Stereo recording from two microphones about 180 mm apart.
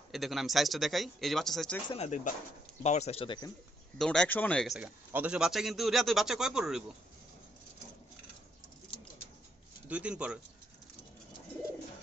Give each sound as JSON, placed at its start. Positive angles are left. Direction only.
{"t": 0.1, "sound": "a man's voice", "side_deg": 0}
{"t": 1.9, "sound": "speech", "side_deg": 35}
{"t": 4.0, "sound": "a man's voice", "side_deg": 5}
{"t": 4.7, "sound": "a man's voice", "side_deg": -10}
{"t": 9.8, "sound": "speech", "side_deg": -10}